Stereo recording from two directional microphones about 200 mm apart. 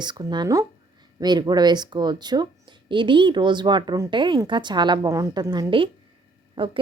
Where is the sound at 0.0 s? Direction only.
20° right (ahead or behind).